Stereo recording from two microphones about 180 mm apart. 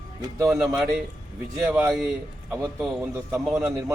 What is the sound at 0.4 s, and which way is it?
A man's voice, 5° right (ahead or behind).